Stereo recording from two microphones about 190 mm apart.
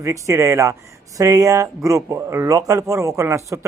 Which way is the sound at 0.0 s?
15° right (ahead or behind).